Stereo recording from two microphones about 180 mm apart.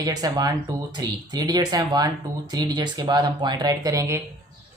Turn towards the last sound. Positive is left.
turn(degrees=-15)  # may be behind; listen again after turning